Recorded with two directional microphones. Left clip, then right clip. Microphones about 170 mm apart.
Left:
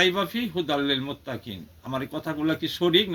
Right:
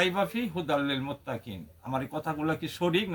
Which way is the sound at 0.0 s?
30° right (ahead or behind).